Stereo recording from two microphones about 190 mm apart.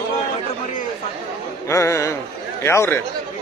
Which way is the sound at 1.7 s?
15° left (ahead or behind).